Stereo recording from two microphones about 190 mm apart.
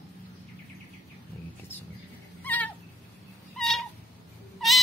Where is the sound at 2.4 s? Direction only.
10° left (ahead or behind).